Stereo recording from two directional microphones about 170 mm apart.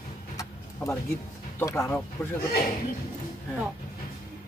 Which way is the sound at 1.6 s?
15° left (ahead or behind).